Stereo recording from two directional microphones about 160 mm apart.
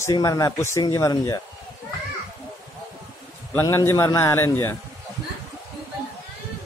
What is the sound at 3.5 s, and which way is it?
A man's voice, 15° left (ahead or behind).